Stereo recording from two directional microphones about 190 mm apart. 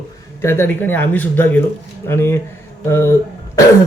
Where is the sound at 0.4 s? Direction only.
10° left (ahead or behind).